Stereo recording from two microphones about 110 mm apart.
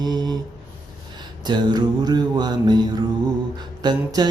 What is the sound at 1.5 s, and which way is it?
Music, 40° right (ahead or behind).